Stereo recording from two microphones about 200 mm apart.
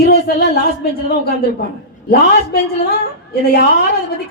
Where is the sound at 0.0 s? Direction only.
50° left (ahead or behind).